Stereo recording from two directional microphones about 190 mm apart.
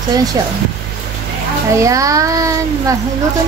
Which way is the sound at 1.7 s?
15° right (ahead or behind).